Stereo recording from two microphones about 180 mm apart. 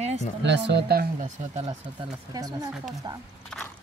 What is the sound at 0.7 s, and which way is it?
Speech, 65° right (ahead or behind).